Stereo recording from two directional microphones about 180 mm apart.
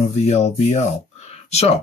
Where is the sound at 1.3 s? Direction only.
35° left (ahead or behind).